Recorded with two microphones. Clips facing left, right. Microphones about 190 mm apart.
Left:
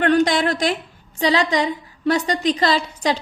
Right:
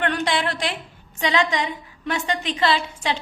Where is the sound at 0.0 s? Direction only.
40° left (ahead or behind).